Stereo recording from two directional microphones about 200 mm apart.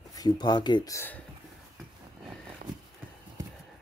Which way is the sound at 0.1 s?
20° left (ahead or behind).